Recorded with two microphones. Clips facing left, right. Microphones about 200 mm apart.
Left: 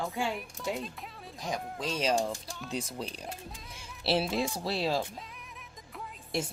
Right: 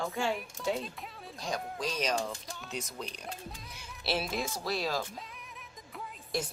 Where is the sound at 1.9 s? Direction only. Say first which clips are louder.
Left 5 dB; 30° left (ahead or behind).